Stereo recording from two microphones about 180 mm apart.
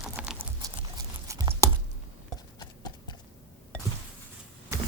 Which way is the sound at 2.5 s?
25° left (ahead or behind).